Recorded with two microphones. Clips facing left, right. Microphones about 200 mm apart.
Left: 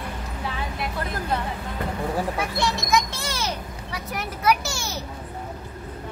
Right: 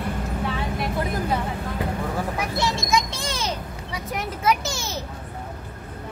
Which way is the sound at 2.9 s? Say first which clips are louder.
Even; 15° right (ahead or behind).